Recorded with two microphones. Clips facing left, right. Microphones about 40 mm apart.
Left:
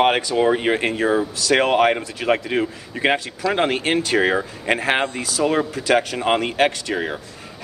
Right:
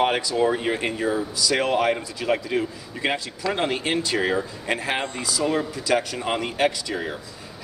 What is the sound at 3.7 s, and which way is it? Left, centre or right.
Speech, left.